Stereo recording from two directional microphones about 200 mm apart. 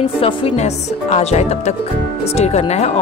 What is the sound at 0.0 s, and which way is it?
Speech, 30° left (ahead or behind).